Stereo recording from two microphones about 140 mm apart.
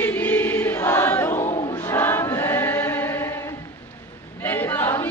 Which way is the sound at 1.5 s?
35° left (ahead or behind).